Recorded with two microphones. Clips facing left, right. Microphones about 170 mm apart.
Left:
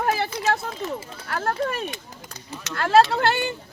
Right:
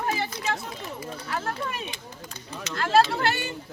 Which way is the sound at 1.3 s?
50° left (ahead or behind).